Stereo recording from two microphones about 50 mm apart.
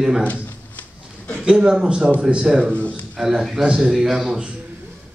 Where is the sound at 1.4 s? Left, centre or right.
Centre.